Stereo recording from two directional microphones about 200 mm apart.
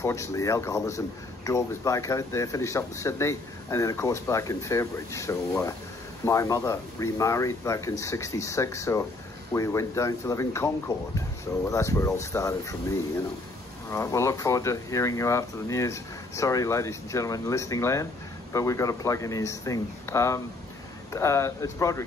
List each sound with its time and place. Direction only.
0.0 s a man's voice: 15° left (ahead or behind)
13.8 s a man's voice: 15° left (ahead or behind)